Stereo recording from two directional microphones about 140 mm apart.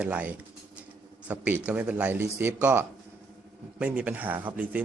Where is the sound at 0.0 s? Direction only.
10° right (ahead or behind).